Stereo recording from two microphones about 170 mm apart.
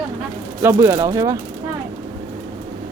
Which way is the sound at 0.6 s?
20° right (ahead or behind).